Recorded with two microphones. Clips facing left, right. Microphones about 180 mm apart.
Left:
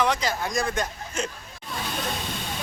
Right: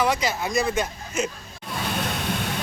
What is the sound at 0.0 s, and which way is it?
Speech, 10° right (ahead or behind).